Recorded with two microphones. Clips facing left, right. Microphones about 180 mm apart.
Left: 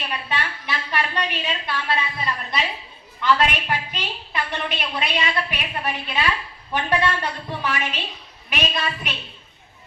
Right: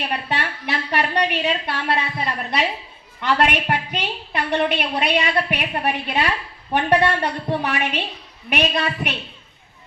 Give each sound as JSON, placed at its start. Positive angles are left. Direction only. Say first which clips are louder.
{"t": 0.0, "sound": "a woman's voice", "louder": "right 3 dB", "side_deg": -60}